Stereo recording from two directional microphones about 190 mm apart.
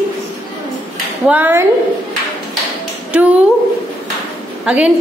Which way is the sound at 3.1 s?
5° right (ahead or behind).